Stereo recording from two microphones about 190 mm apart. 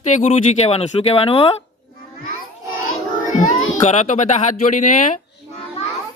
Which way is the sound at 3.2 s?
40° left (ahead or behind).